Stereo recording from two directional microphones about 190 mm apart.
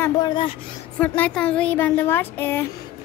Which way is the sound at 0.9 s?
10° left (ahead or behind).